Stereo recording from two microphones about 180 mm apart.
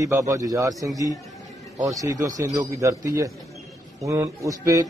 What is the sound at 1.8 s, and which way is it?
Speech, 20° right (ahead or behind).